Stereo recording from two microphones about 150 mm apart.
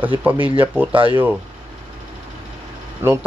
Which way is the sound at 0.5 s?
10° right (ahead or behind).